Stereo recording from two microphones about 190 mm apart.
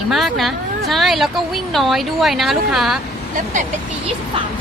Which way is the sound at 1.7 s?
Centre (ahead or behind).